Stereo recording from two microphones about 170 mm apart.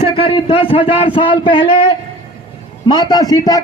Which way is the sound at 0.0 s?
30° left (ahead or behind).